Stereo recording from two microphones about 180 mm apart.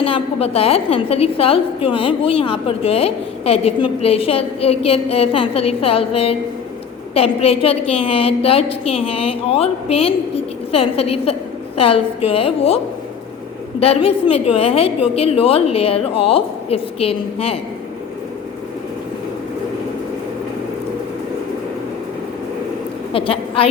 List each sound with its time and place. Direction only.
0.0 s a woman's voice: 30° left (ahead or behind)
23.1 s a woman's voice: 30° left (ahead or behind)